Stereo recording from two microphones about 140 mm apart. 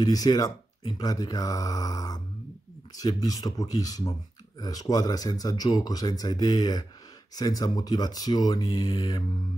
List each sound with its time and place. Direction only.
0.0 s speech: 25° left (ahead or behind)